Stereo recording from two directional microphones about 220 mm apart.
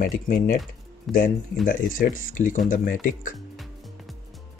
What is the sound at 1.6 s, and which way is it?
Speech, 40° left (ahead or behind).